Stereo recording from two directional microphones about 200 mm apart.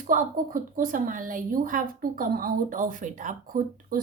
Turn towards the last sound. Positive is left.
turn(degrees=-45)  # may be behind; listen again after turning